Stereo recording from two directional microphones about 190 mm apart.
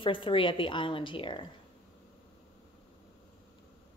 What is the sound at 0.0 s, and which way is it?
A woman's voice, 25° left (ahead or behind).